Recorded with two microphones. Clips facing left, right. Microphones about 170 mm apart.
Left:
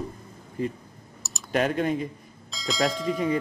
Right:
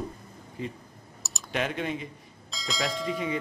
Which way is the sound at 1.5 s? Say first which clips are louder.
Left 6 dB; 45° left (ahead or behind).